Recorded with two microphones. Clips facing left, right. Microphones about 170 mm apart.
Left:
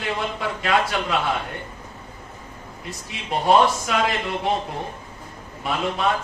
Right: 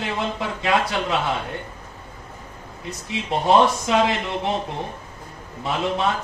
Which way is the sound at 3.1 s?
25° right (ahead or behind).